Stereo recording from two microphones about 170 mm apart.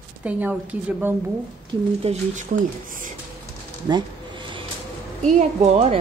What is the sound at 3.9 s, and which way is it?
Speech, 25° right (ahead or behind).